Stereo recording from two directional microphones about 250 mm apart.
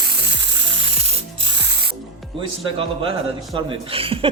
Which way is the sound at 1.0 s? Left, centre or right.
Right.